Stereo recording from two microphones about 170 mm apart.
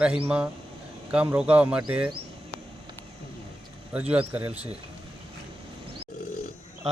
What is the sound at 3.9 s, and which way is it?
Speech, 10° right (ahead or behind).